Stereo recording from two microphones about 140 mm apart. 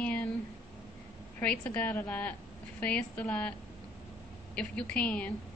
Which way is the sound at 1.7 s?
10° left (ahead or behind).